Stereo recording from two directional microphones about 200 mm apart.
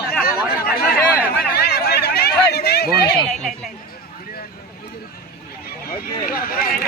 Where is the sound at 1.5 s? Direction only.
50° left (ahead or behind).